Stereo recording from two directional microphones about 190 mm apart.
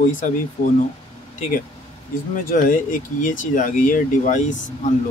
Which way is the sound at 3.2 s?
45° left (ahead or behind).